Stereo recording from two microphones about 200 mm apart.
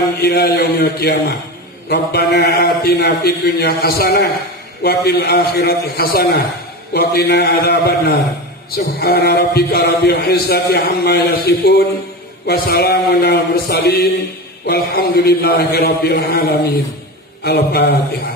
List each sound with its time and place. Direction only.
0.2 s a man's voice: 50° left (ahead or behind)